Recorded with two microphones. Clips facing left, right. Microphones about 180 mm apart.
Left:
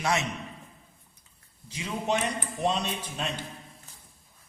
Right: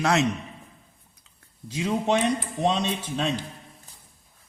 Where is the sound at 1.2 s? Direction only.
85° right.